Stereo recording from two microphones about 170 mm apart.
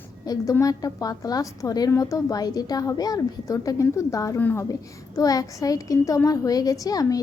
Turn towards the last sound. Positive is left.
turn(degrees=20)  # may be behind; listen again after turning